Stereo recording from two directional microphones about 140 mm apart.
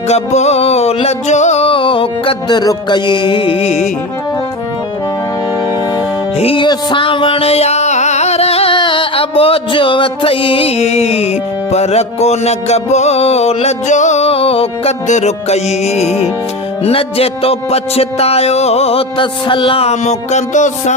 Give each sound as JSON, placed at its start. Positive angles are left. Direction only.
{"t": 0.1, "sound": "music", "side_deg": 50}
{"t": 6.4, "sound": "music", "side_deg": 40}
{"t": 15.0, "sound": "music", "side_deg": 55}